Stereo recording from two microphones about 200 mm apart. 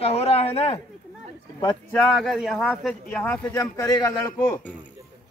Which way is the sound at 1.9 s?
5° left (ahead or behind).